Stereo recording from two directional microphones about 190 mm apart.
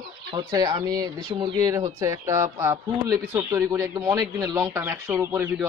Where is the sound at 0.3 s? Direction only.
20° right (ahead or behind).